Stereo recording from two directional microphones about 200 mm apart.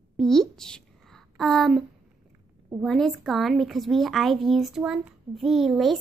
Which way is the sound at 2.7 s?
Centre (ahead or behind).